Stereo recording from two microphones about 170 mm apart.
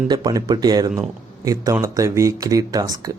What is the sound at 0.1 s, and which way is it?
Speech, 25° right (ahead or behind).